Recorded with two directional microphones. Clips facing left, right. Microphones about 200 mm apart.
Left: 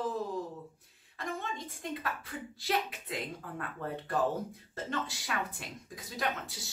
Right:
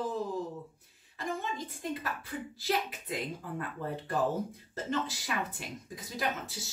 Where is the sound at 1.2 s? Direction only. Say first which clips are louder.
Right 2 dB; centre (ahead or behind).